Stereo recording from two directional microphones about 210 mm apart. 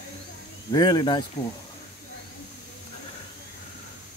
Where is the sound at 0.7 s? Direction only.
20° left (ahead or behind).